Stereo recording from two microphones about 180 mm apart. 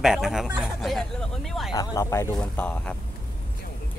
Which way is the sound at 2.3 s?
5° left (ahead or behind).